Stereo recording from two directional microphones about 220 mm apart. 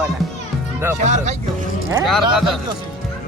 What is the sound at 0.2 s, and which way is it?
Music, centre (ahead or behind).